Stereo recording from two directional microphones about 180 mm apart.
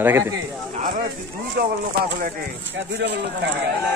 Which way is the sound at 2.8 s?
80° right.